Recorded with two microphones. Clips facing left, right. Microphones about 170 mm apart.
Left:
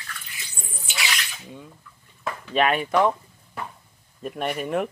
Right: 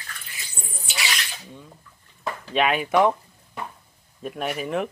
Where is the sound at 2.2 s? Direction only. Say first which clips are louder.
Left 1 dB; centre (ahead or behind).